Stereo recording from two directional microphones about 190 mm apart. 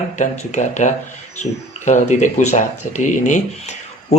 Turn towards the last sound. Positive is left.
turn(degrees=40)  # may be behind; listen again after turning